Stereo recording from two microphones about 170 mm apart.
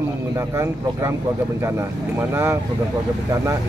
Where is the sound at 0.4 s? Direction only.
15° right (ahead or behind).